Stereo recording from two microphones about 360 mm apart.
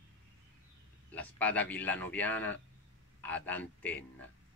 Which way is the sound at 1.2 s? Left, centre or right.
Centre.